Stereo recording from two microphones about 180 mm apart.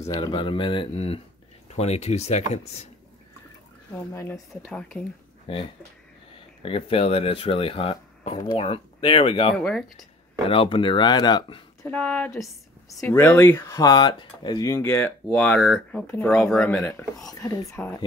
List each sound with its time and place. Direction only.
0.0 s speech: 20° left (ahead or behind); by 2.9 s 40° left (ahead or behind)
4.1 s speech: 15° left (ahead or behind)
4.6 s speech: 5° left (ahead or behind)
5.5 s speech: 30° left (ahead or behind)
9.6 s speech: 5° left (ahead or behind)
10.5 s speech: 30° left (ahead or behind)
11.8 s speech: 5° left (ahead or behind)